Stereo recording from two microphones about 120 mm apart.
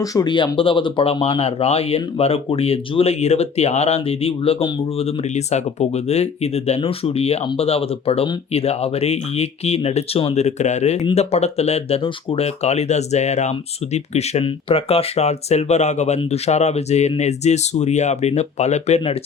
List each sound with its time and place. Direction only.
0.0 s speech: 30° left (ahead or behind); by 11.0 s 75° left (ahead or behind)
11.0 s speech: 60° left (ahead or behind)